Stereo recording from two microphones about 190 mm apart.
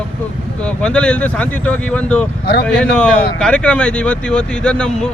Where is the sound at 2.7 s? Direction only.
5° left (ahead or behind).